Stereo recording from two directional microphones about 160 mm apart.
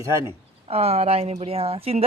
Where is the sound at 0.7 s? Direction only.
40° right (ahead or behind).